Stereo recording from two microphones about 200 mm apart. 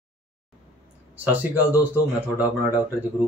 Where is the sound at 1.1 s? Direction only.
10° right (ahead or behind).